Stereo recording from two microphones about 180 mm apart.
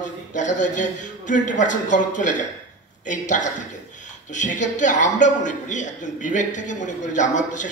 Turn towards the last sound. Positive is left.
turn(degrees=45)  # may be behind; listen again after turning